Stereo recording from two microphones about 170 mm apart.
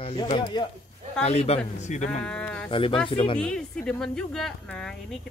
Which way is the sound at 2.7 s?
30° left (ahead or behind).